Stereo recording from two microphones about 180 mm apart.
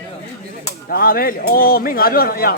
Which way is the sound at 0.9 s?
55° left (ahead or behind).